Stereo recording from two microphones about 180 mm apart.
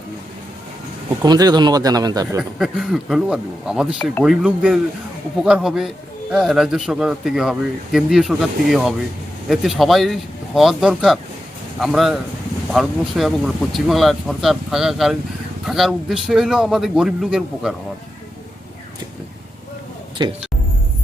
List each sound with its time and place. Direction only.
1.2 s speech: 20° right (ahead or behind)
2.4 s speech: centre (ahead or behind)